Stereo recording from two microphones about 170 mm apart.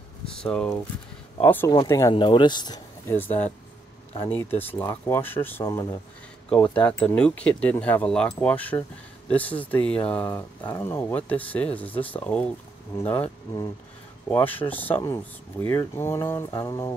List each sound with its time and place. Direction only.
0.4 s speech: 5° left (ahead or behind)
1.7 s speech: 20° left (ahead or behind)
3.1 s speech: 10° left (ahead or behind)
14.3 s speech: 10° left (ahead or behind)